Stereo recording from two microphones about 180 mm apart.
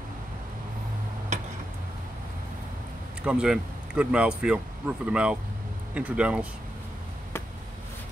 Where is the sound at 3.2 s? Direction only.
5° right (ahead or behind).